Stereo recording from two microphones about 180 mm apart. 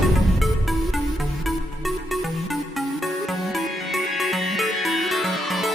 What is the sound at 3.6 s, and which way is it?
Music, centre (ahead or behind).